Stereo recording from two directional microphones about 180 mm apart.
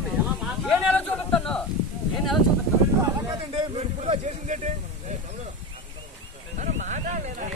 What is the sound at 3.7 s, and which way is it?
Speech, 40° right (ahead or behind).